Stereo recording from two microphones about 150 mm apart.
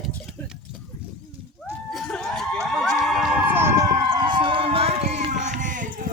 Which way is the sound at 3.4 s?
15° right (ahead or behind).